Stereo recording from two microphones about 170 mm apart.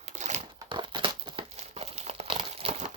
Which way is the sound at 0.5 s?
25° right (ahead or behind).